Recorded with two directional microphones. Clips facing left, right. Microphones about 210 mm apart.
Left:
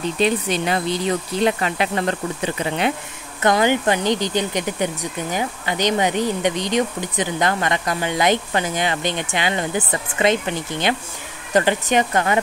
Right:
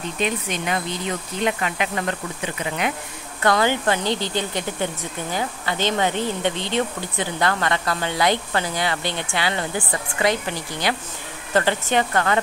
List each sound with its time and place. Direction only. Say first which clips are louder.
0.2 s speech: left 5 dB; 35° left (ahead or behind)
3.4 s speech: left 2 dB; 15° left (ahead or behind)